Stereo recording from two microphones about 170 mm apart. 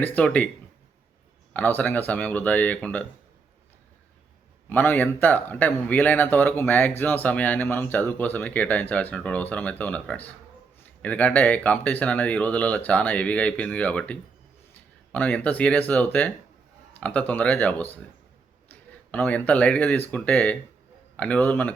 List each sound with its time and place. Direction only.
0.0 s speech: 10° left (ahead or behind)
1.5 s speech: 10° left (ahead or behind)
4.7 s speech: 10° left (ahead or behind)